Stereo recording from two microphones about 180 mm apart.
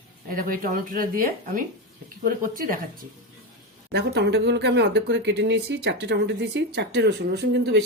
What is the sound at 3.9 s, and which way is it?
Speech, 70° right (ahead or behind).